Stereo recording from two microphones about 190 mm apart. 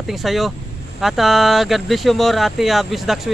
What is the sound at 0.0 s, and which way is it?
Speech, centre (ahead or behind).